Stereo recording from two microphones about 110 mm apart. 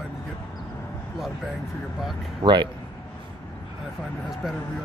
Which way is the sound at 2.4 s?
45° right (ahead or behind).